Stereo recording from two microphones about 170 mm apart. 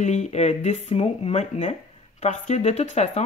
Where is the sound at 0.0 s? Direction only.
45° left (ahead or behind).